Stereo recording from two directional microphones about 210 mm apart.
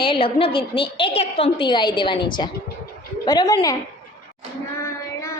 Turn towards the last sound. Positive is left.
turn(degrees=20)  # may be behind; listen again after turning